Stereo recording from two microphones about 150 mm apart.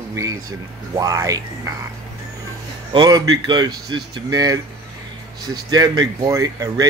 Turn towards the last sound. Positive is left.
turn(degrees=-25)  # may be behind; listen again after turning